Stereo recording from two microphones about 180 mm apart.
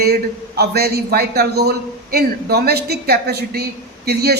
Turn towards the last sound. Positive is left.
turn(degrees=-65)  # may be behind; listen again after turning